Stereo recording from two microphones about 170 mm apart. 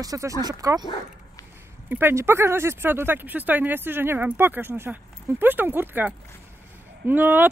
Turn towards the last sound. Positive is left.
turn(degrees=-10)  # may be behind; listen again after turning